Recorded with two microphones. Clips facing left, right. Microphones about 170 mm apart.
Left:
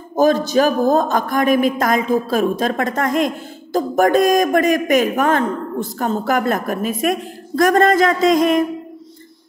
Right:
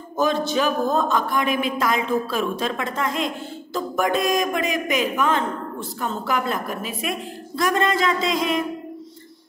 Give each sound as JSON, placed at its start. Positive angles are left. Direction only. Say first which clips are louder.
{"t": 0.1, "sound": "a man's voice", "louder": "left 7 dB", "side_deg": 40}